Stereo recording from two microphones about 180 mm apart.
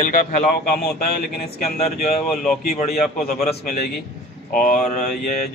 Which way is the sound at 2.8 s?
50° left (ahead or behind).